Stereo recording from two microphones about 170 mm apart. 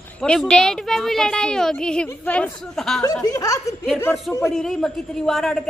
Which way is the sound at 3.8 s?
10° left (ahead or behind).